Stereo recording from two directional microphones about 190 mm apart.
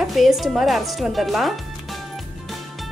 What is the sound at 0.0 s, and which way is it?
Speech, centre (ahead or behind).